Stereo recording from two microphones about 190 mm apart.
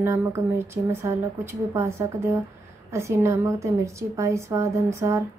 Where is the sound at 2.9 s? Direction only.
15° right (ahead or behind).